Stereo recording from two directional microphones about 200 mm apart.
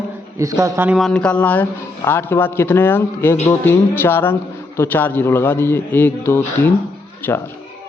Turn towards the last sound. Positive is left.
turn(degrees=10)  # may be behind; listen again after turning